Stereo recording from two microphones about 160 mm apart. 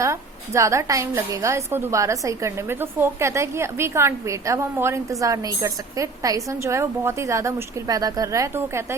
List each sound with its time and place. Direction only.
0.0 s a woman's voice: 20° right (ahead or behind)